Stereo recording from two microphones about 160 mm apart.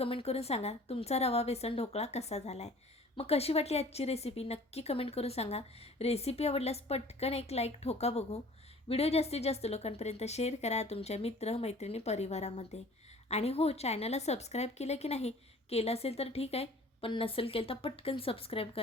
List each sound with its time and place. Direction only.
0.0 s a woman's voice: 35° left (ahead or behind)